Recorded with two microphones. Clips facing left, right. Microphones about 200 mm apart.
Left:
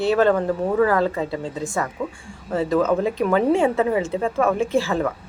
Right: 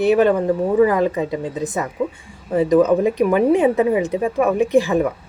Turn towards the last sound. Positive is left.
turn(degrees=-15)  # may be behind; listen again after turning